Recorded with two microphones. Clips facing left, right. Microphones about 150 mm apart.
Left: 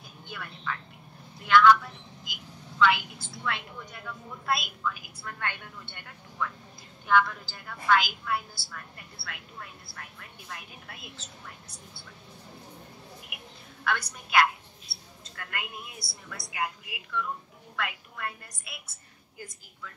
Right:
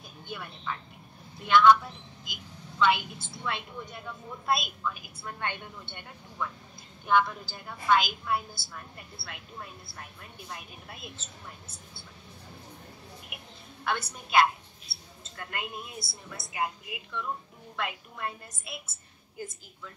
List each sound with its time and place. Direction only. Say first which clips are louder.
0.3 s a woman's voice: even; 20° right (ahead or behind)
13.8 s a woman's voice: left 1 dB; 25° right (ahead or behind)